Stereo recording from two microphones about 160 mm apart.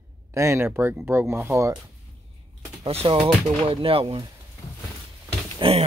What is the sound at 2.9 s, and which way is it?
Speech, 40° right (ahead or behind).